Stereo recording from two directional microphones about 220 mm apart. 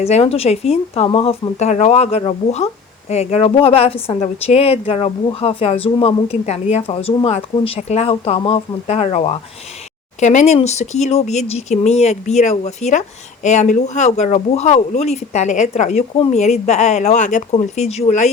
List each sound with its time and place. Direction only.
0.0 s a woman's voice: 30° left (ahead or behind)